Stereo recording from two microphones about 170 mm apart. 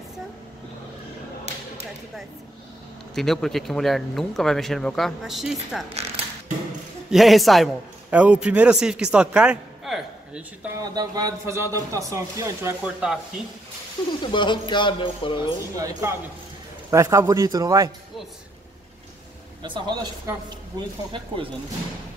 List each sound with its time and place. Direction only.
3.2 s speech: centre (ahead or behind)
7.1 s a man's voice: centre (ahead or behind)
10.8 s a man's voice: 20° right (ahead or behind)
12.8 s speech: 5° right (ahead or behind)
14.2 s speech: 25° left (ahead or behind)
15.7 s a man's voice: 20° right (ahead or behind)
19.6 s a man's voice: 25° right (ahead or behind)